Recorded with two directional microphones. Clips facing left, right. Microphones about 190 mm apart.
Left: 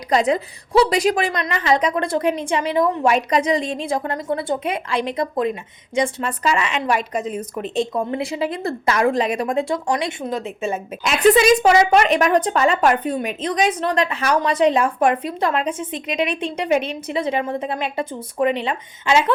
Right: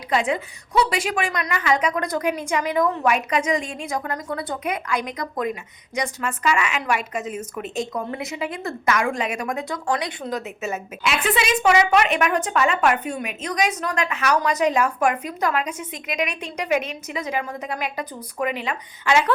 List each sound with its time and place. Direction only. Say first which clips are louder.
0.1 s a woman's voice: left 4 dB; 40° left (ahead or behind); by 19.3 s 25° left (ahead or behind)